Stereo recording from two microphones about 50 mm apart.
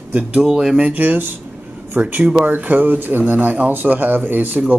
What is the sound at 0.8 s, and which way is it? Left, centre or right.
Speech, right.